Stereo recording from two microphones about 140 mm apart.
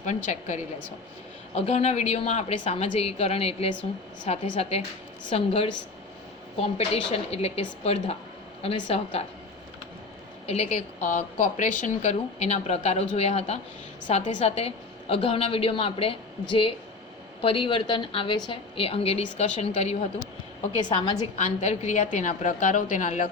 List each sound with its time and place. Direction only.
0.3 s a woman's voice: 55° left (ahead or behind)
1.5 s a woman's voice: 45° left (ahead or behind)
4.4 s a woman's voice: 60° left (ahead or behind)
5.5 s a woman's voice: 45° left (ahead or behind)
10.4 s a woman's voice: 50° left (ahead or behind)
17.4 s a woman's voice: 40° left (ahead or behind)
18.9 s a woman's voice: 45° left (ahead or behind)
20.7 s a woman's voice: 35° left (ahead or behind)
21.3 s a woman's voice: 55° left (ahead or behind)